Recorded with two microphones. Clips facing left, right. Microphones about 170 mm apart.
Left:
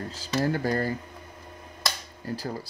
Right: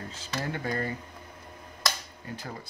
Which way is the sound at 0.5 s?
35° left (ahead or behind).